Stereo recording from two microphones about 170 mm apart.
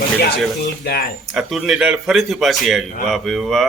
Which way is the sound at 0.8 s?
65° left (ahead or behind).